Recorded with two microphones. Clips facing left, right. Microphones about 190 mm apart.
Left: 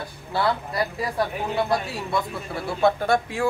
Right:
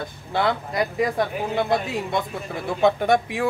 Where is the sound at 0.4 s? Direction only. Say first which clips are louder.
Right 1 dB; 20° right (ahead or behind).